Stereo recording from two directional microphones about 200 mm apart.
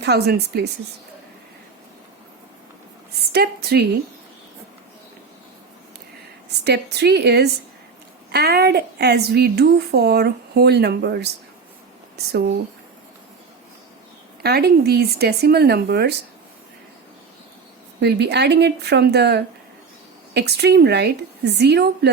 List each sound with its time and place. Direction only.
0.0 s a woman's voice: 55° right (ahead or behind)
3.2 s a sound: 55° right (ahead or behind)
6.7 s a woman's voice: 55° right (ahead or behind)
14.4 s a woman's voice: 50° right (ahead or behind)
18.0 s a woman's voice: 55° right (ahead or behind)